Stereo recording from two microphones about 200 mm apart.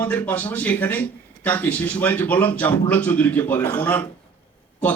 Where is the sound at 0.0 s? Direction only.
10° left (ahead or behind).